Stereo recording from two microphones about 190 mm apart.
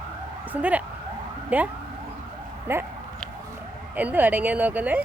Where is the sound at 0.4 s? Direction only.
10° right (ahead or behind).